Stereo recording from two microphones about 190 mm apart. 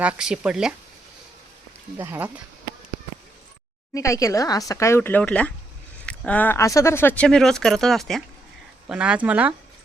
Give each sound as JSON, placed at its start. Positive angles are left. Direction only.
{"t": 0.0, "sound": "speech", "side_deg": -5}
{"t": 2.0, "sound": "speech", "side_deg": -10}
{"t": 3.9, "sound": "speech", "side_deg": 15}